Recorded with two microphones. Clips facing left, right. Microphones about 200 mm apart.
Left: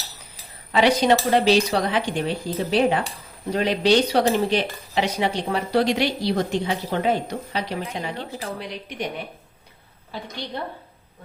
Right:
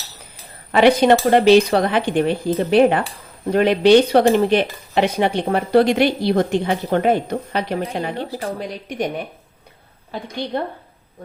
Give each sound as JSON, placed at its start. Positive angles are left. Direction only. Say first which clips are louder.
{"t": 0.7, "sound": "a woman's voice", "louder": "right 5 dB", "side_deg": -55}
{"t": 10.1, "sound": "speech", "louder": "right 7 dB", "side_deg": -55}